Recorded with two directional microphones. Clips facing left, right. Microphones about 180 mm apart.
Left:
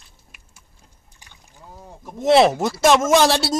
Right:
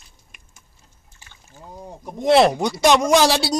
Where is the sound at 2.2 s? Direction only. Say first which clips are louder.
Even; centre (ahead or behind).